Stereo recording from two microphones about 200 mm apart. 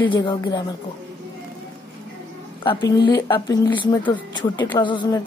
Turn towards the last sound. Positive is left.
turn(degrees=20)  # may be behind; listen again after turning